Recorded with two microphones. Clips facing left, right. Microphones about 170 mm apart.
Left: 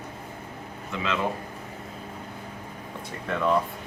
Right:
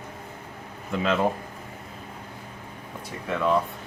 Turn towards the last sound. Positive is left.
turn(degrees=0)  # may be behind; listen again after turning